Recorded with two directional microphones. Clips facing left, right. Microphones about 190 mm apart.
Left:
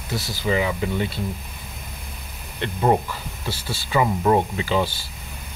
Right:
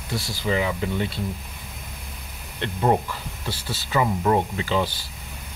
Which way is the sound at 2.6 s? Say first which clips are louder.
Left 1 dB; 5° left (ahead or behind).